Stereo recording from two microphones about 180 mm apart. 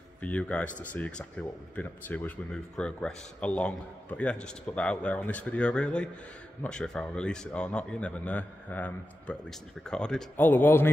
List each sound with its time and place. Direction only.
0.2 s speech: 10° left (ahead or behind)